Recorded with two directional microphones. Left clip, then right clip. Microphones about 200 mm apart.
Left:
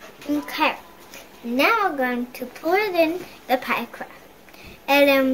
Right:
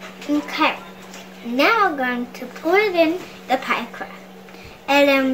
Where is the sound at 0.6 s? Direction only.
30° left (ahead or behind).